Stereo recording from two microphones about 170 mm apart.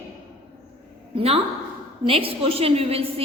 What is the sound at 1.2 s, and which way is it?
A woman's voice, 35° right (ahead or behind).